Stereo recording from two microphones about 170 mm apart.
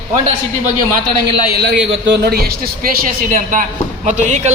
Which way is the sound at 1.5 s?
80° right.